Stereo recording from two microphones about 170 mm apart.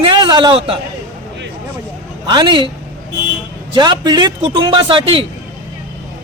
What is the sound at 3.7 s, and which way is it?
A man's voice, 25° right (ahead or behind).